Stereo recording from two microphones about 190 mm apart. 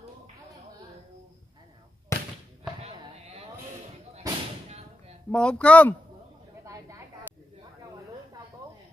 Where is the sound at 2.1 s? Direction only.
15° left (ahead or behind).